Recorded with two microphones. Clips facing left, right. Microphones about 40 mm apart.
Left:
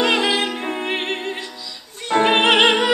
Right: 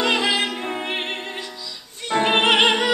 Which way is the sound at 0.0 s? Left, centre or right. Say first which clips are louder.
Left 2 dB; centre.